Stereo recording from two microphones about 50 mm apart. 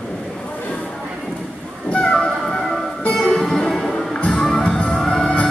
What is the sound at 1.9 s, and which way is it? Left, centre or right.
Music, centre.